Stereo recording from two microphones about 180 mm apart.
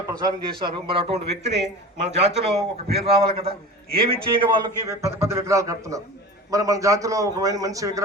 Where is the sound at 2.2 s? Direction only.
40° right (ahead or behind).